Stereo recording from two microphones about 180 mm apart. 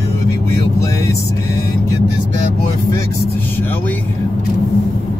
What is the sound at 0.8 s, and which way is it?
Vehicle, 15° left (ahead or behind).